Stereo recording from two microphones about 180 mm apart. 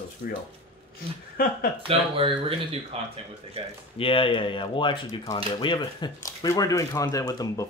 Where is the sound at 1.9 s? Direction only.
30° right (ahead or behind).